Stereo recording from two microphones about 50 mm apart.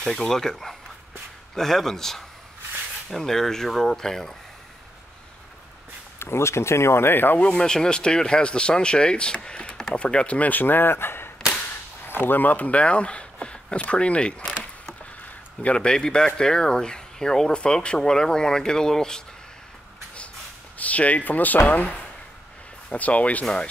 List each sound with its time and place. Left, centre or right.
0.2 s speech: centre
6.1 s speech: left
7.5 s speech: centre
15.6 s speech: centre
20.7 s speech: left